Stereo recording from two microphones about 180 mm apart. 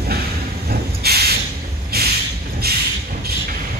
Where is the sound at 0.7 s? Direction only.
60° right (ahead or behind).